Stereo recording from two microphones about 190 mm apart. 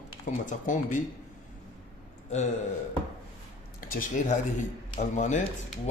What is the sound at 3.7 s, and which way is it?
Speech, 45° left (ahead or behind).